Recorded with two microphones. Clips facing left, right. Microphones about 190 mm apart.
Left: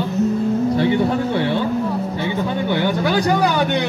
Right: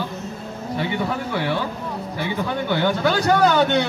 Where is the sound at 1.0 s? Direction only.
30° left (ahead or behind).